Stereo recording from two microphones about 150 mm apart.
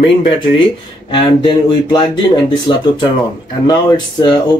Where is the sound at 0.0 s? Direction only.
35° left (ahead or behind).